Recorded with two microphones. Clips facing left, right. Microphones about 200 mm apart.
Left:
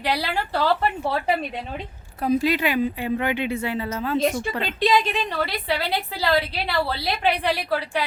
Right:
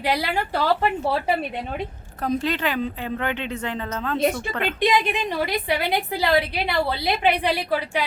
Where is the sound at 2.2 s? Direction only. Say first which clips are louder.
Left 3 dB; 10° left (ahead or behind).